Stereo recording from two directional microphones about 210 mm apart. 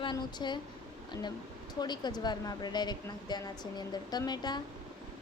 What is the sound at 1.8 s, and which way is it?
Speech, 20° left (ahead or behind).